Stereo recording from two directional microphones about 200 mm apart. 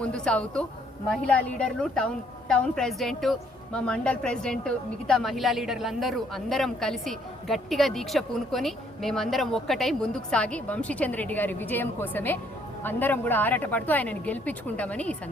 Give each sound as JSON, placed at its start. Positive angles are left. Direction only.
{"t": 0.0, "sound": "a woman's voice", "side_deg": 5}